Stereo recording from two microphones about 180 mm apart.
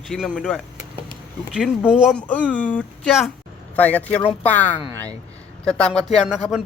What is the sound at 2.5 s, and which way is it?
Speech, 5° left (ahead or behind).